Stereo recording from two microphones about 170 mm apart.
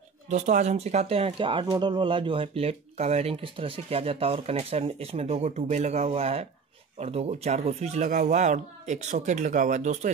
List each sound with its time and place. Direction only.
0.3 s speech: 45° right (ahead or behind)